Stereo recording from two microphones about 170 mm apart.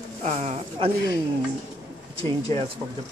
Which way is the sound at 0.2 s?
40° right (ahead or behind).